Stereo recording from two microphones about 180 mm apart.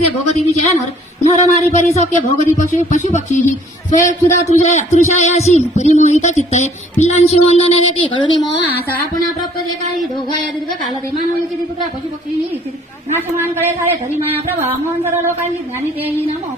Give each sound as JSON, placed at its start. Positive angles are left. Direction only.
{"t": 0.0, "sound": "speech", "side_deg": 35}
{"t": 8.7, "sound": "speech", "side_deg": 10}
{"t": 14.2, "sound": "music", "side_deg": -10}